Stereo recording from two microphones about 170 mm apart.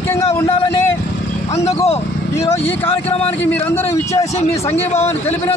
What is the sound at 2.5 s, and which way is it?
A man's voice, 15° left (ahead or behind).